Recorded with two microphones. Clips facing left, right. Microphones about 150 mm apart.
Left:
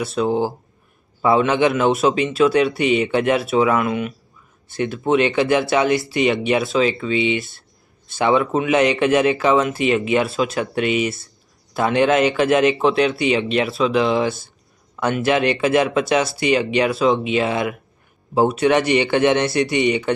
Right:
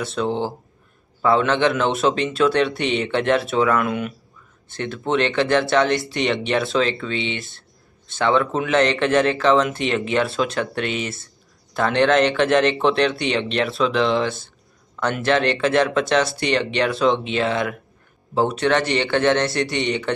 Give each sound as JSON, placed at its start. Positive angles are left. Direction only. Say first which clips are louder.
{"t": 0.0, "sound": "a man's voice", "louder": "left 3 dB", "side_deg": 5}